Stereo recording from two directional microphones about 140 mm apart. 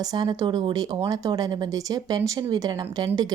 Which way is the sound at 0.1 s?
30° right (ahead or behind).